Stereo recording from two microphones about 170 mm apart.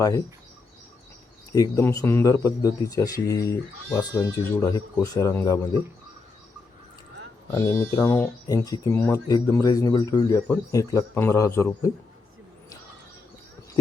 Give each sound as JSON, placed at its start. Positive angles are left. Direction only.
{"t": 1.5, "sound": "speech", "side_deg": 20}
{"t": 7.5, "sound": "speech", "side_deg": 20}